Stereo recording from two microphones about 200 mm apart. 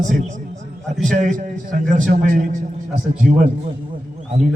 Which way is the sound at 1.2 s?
40° right (ahead or behind).